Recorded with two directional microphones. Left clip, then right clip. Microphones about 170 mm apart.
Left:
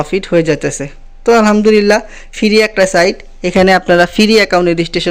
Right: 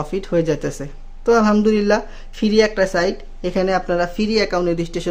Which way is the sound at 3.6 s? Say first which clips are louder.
Left 10 dB; 40° left (ahead or behind).